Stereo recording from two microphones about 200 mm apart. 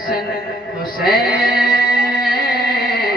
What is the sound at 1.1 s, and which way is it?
Music, 50° left (ahead or behind).